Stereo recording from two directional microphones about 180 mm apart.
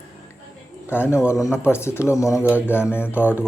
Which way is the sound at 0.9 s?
15° left (ahead or behind).